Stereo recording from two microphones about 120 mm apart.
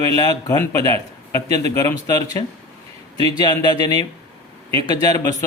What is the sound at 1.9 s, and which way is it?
Speech, 30° left (ahead or behind).